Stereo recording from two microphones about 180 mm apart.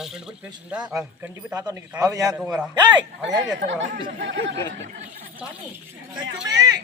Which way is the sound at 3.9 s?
80° right.